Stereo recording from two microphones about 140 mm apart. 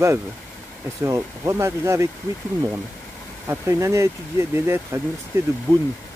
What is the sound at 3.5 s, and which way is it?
Speech, 20° right (ahead or behind).